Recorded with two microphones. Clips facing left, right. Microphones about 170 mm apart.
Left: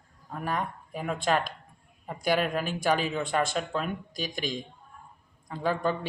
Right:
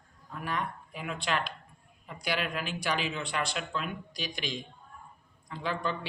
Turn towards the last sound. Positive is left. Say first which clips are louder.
# left 5 dB
turn(degrees=45)  # may be behind; listen again after turning